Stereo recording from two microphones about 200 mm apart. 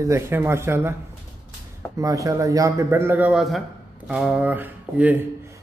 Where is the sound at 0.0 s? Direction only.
15° right (ahead or behind).